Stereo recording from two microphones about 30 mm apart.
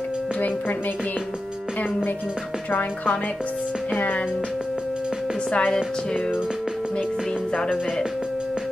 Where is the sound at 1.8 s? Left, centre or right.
Left.